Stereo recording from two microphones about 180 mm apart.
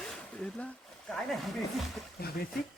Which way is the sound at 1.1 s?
Centre (ahead or behind).